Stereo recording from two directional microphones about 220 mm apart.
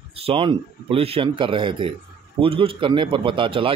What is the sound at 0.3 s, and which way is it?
Speech, 25° right (ahead or behind).